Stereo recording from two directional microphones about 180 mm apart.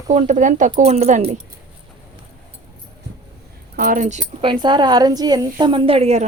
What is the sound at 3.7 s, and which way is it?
Speech, 50° right (ahead or behind).